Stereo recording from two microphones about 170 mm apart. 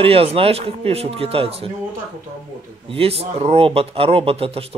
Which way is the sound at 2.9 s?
35° right (ahead or behind).